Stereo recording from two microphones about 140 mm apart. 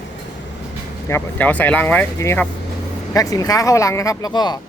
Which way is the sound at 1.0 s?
15° left (ahead or behind).